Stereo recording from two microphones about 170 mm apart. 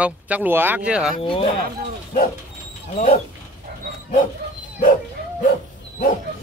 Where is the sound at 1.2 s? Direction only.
30° left (ahead or behind).